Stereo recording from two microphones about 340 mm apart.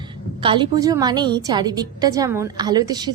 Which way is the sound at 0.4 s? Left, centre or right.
Centre.